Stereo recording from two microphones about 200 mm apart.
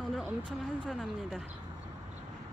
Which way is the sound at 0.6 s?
Centre (ahead or behind).